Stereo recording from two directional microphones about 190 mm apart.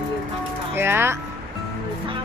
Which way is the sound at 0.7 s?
10° right (ahead or behind).